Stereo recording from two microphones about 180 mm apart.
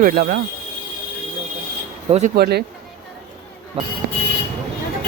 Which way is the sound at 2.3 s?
60° right (ahead or behind).